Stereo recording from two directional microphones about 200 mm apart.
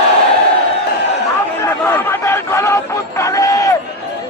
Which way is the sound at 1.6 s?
10° left (ahead or behind).